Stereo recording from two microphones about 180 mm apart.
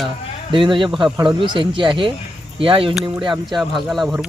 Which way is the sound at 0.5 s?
25° right (ahead or behind).